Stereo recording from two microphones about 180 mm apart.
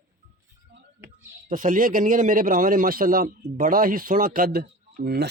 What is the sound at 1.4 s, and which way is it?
A man's voice, 50° right (ahead or behind).